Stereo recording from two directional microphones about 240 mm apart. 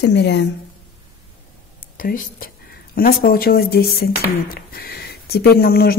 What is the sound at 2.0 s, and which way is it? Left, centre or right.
Speech, left.